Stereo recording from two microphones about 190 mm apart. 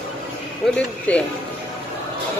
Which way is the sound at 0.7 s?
5° left (ahead or behind).